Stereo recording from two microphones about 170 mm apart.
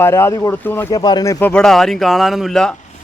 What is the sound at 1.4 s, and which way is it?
Speech, 5° left (ahead or behind).